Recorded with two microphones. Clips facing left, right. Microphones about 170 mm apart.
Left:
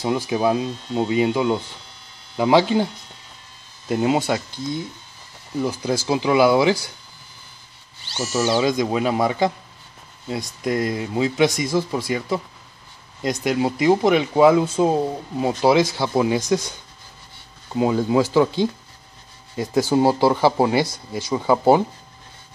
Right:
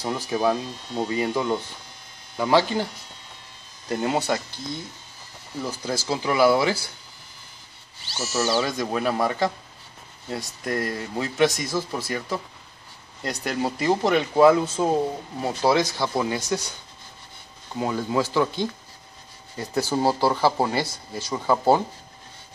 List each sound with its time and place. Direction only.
0.0 s speech: 10° left (ahead or behind)
3.9 s speech: 15° left (ahead or behind)
5.6 s speech: 15° left (ahead or behind)
8.1 s speech: centre (ahead or behind)
8.6 s speech: 15° left (ahead or behind)
17.7 s speech: 15° left (ahead or behind)